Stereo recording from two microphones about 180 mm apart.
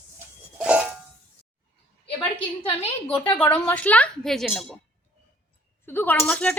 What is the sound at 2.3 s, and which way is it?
Speech, 30° left (ahead or behind).